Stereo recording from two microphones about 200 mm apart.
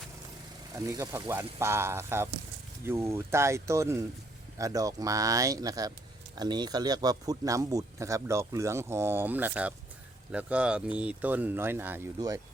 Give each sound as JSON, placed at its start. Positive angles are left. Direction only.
{"t": 0.7, "sound": "speech", "side_deg": -15}